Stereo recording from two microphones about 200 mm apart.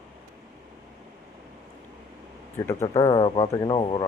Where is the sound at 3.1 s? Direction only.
30° left (ahead or behind).